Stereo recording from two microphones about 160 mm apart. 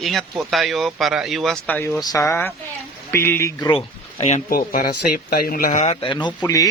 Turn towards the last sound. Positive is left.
turn(degrees=25)  # may be behind; listen again after turning